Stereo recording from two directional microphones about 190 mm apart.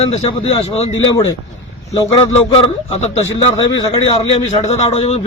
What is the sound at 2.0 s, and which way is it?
A man's voice, 25° left (ahead or behind).